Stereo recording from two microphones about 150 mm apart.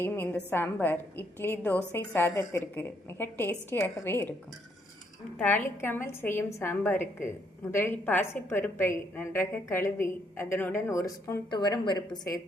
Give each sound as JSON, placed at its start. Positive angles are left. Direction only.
{"t": 0.0, "sound": "a woman's voice", "side_deg": 15}
{"t": 5.4, "sound": "a woman's voice", "side_deg": 15}